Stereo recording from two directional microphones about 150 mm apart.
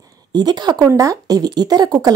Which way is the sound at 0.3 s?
30° right (ahead or behind).